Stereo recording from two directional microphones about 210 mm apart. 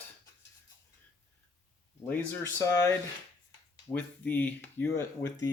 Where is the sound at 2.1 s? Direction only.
10° left (ahead or behind).